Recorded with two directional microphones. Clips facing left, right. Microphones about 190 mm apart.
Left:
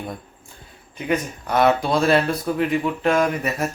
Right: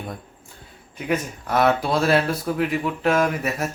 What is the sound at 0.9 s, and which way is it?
Speech, centre (ahead or behind).